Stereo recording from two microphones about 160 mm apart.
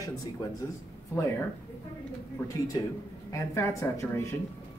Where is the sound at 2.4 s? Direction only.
20° left (ahead or behind).